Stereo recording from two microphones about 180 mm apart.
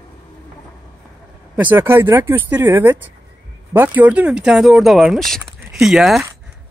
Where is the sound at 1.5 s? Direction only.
10° right (ahead or behind).